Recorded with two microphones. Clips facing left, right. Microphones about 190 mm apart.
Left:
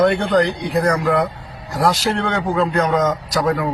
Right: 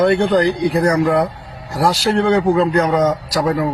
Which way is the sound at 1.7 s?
10° right (ahead or behind).